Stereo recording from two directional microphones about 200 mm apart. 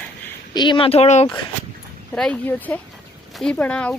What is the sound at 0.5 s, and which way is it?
Speech, 20° left (ahead or behind).